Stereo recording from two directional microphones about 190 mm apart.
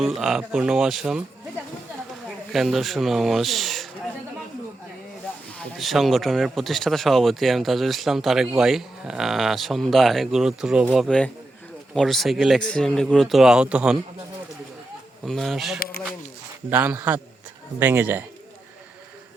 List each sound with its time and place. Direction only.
0.0 s speech: centre (ahead or behind)
2.5 s speech: centre (ahead or behind)
5.5 s speech: centre (ahead or behind)
15.2 s speech: centre (ahead or behind)
15.8 s a sound: 55° left (ahead or behind)
16.6 s a man's voice: 10° right (ahead or behind)